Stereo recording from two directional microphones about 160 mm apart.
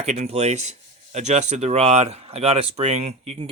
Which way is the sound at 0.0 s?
45° right (ahead or behind).